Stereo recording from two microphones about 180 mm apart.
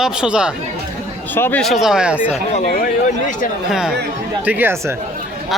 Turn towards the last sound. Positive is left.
turn(degrees=-10)  # may be behind; listen again after turning